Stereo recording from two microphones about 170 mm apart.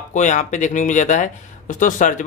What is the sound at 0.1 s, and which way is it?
Speech, 45° left (ahead or behind).